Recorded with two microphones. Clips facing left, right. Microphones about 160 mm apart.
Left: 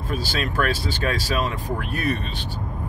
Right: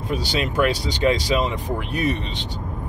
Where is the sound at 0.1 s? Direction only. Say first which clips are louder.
Right 3 dB; 20° right (ahead or behind).